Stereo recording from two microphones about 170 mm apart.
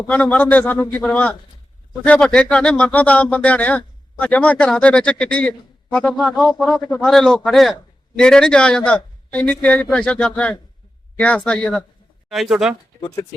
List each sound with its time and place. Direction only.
0.1 s a man's voice: 5° left (ahead or behind)
13.0 s speech: 20° left (ahead or behind)